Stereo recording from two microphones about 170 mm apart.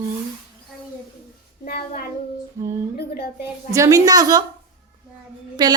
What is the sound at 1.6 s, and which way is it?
Child singing, 65° left (ahead or behind).